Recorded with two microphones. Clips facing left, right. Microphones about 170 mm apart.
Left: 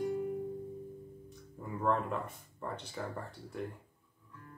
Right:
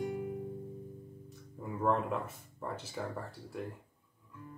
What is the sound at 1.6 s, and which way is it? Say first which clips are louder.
Speech: right 1 dB; 5° right (ahead or behind).